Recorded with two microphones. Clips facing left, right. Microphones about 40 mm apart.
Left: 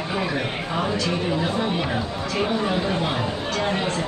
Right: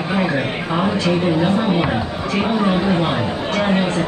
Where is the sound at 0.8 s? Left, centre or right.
Right.